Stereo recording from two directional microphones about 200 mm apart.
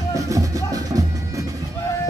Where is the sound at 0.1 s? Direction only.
15° right (ahead or behind).